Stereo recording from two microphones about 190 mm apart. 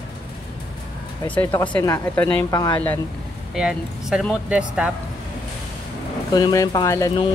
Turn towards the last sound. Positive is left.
turn(degrees=20)  # may be behind; listen again after turning